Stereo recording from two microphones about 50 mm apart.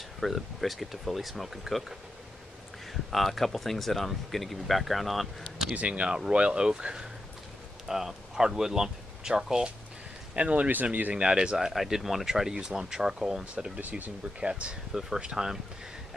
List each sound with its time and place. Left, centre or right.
0.2 s speech: centre
5.8 s speech: right
10.3 s speech: right
10.7 s speech: right
11.1 s speech: centre
11.7 s speech: centre
13.7 s speech: right
14.4 s speech: right